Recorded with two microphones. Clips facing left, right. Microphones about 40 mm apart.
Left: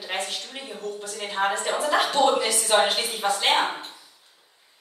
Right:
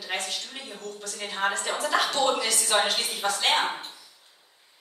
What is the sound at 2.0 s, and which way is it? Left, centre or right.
Speech, left.